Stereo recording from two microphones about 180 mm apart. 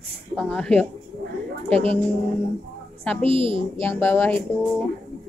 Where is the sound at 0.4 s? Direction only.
5° left (ahead or behind).